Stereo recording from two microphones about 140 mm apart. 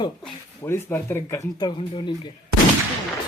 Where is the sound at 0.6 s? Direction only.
15° left (ahead or behind).